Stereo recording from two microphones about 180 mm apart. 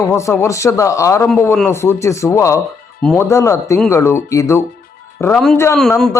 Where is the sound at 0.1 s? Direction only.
15° left (ahead or behind).